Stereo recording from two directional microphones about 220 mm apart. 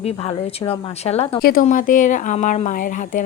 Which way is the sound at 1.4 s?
40° left (ahead or behind).